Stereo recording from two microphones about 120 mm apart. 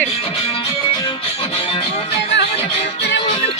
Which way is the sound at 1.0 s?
45° left (ahead or behind).